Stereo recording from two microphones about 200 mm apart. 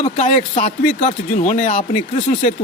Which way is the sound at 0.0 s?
35° left (ahead or behind).